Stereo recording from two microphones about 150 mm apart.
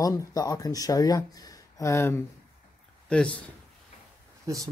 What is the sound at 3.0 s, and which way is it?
Speech, 5° left (ahead or behind).